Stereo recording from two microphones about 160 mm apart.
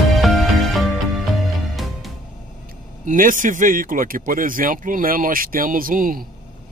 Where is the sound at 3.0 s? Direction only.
55° right (ahead or behind).